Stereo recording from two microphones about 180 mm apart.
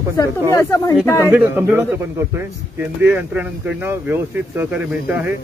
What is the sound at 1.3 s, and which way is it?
Speech, 10° right (ahead or behind).